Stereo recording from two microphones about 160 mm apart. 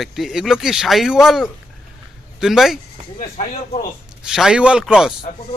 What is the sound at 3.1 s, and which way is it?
Speech, 45° left (ahead or behind).